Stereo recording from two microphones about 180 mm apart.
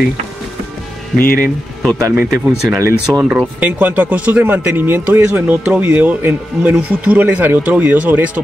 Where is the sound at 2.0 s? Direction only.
20° right (ahead or behind).